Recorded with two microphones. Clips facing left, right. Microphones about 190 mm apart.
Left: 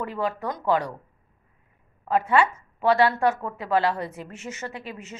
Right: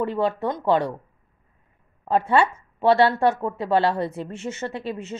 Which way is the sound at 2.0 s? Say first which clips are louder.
Right 2 dB; 30° right (ahead or behind).